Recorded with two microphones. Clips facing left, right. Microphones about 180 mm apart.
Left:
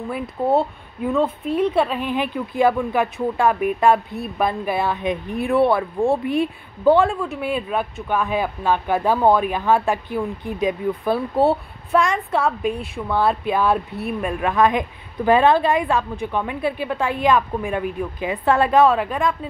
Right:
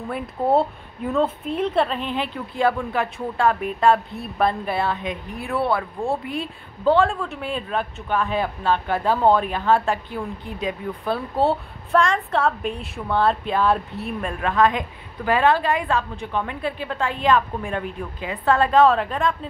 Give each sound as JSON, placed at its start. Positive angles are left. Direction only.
{"t": 1.1, "sound": "a woman's voice", "side_deg": 0}